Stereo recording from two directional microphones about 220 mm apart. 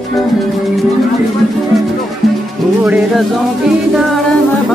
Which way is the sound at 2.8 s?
5° right (ahead or behind).